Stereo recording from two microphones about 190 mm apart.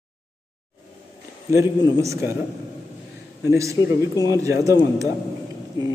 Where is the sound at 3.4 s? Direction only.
15° right (ahead or behind).